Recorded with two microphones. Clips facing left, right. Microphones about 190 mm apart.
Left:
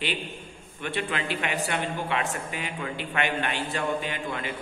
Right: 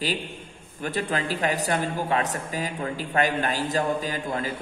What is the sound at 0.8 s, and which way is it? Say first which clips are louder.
A man's voice: right 3 dB; 40° right (ahead or behind).